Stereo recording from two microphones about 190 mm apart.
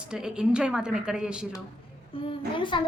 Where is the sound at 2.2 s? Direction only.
25° left (ahead or behind).